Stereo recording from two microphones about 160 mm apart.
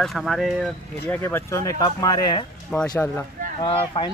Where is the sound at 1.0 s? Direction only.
15° left (ahead or behind).